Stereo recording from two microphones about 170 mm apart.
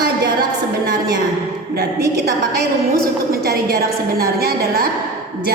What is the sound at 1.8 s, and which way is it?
Speech, 70° right (ahead or behind).